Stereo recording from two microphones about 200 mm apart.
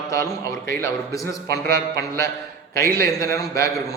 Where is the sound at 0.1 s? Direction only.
15° left (ahead or behind).